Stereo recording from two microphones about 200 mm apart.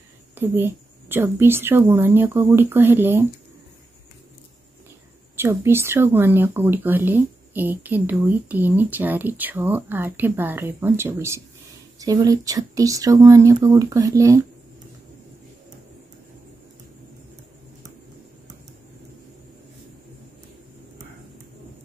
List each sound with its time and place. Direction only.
0.4 s speech: 10° right (ahead or behind)
5.3 s speech: 15° right (ahead or behind)